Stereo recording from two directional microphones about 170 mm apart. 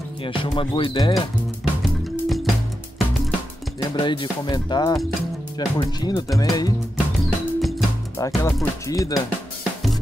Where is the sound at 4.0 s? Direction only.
25° left (ahead or behind).